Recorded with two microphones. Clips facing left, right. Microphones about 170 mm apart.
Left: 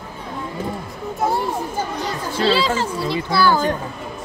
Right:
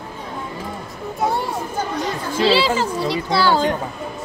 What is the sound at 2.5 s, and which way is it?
A child's voice, 10° right (ahead or behind).